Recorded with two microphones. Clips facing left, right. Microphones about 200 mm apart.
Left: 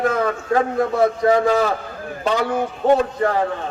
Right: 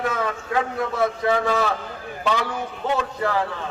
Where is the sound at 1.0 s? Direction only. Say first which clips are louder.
Left 5 dB; 35° left (ahead or behind).